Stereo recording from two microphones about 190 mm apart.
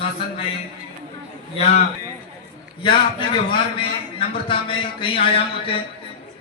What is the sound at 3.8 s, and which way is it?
A man's voice, 25° left (ahead or behind).